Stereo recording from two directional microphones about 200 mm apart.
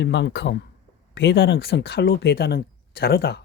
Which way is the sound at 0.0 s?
60° left (ahead or behind).